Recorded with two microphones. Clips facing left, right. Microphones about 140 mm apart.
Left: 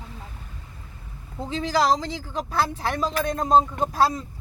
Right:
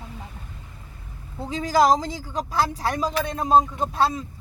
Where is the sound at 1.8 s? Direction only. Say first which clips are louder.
Right 5 dB; 45° right (ahead or behind).